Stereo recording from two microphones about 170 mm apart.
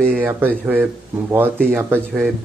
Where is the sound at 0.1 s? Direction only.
10° right (ahead or behind).